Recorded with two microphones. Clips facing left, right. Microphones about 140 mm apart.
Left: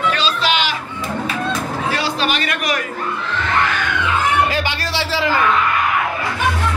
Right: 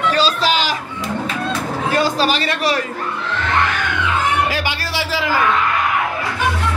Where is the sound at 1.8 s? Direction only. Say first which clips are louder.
Right 5 dB; 45° right (ahead or behind); by 2.8 s 30° right (ahead or behind).